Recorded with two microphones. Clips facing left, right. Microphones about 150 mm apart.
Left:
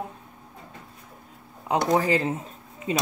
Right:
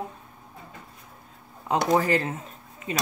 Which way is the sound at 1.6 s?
15° left (ahead or behind).